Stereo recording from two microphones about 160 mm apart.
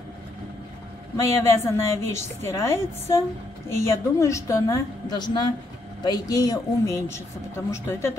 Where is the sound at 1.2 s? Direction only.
15° left (ahead or behind).